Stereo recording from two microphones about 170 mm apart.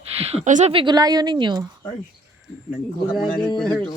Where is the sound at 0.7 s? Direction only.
25° right (ahead or behind).